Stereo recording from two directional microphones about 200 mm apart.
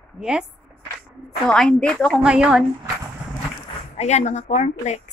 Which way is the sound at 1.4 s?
5° left (ahead or behind).